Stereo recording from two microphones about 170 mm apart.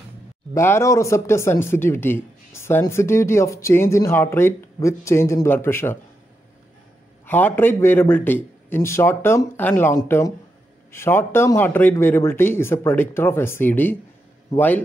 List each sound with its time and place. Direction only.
0.6 s speech: 15° left (ahead or behind)
7.2 s speech: 10° left (ahead or behind)